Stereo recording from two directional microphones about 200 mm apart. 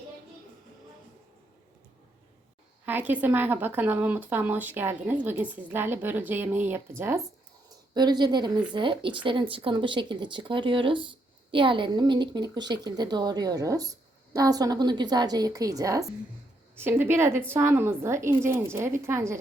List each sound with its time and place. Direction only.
2.8 s a woman's voice: 10° right (ahead or behind)